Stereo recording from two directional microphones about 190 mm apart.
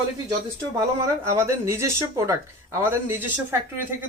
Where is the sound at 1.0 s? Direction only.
15° right (ahead or behind).